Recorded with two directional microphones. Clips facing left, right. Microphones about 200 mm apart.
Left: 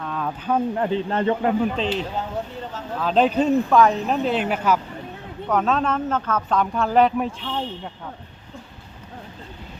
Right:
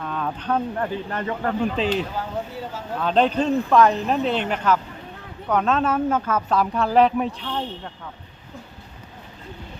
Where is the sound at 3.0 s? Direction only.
5° left (ahead or behind).